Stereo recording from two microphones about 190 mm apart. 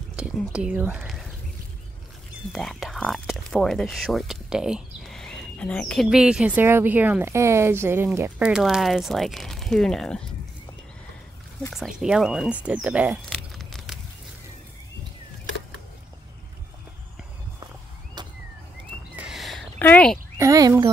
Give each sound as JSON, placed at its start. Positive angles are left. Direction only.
{"t": 0.1, "sound": "speech", "side_deg": -5}
{"t": 2.5, "sound": "speech", "side_deg": 0}
{"t": 11.7, "sound": "speech", "side_deg": 0}
{"t": 13.3, "sound": "a sound", "side_deg": 0}
{"t": 18.2, "sound": "vehicle", "side_deg": -20}
{"t": 19.1, "sound": "a sound", "side_deg": 0}
{"t": 20.3, "sound": "speech", "side_deg": -15}